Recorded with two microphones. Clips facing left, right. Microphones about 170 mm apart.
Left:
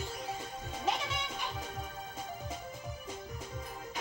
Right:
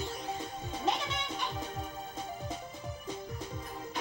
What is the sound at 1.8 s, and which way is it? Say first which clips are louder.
Music: right 2 dB; 10° right (ahead or behind).